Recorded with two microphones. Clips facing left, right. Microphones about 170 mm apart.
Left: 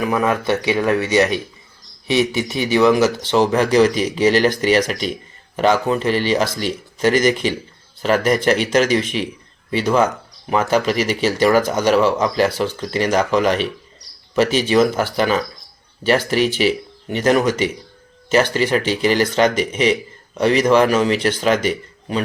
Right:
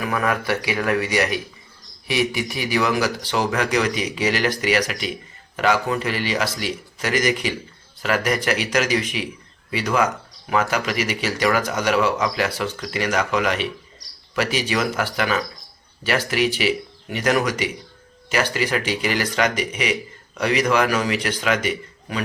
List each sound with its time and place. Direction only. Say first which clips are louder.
0.0 s speech: left 5 dB; 20° left (ahead or behind)